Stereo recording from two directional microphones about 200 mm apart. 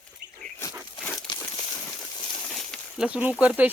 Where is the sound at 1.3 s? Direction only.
20° left (ahead or behind).